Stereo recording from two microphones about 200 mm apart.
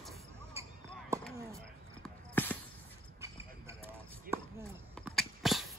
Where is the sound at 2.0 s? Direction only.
10° left (ahead or behind).